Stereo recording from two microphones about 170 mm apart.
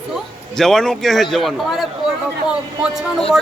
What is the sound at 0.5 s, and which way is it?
A woman's voice, 5° left (ahead or behind).